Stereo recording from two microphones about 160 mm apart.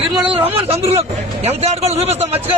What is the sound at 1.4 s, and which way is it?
Speech, 40° right (ahead or behind).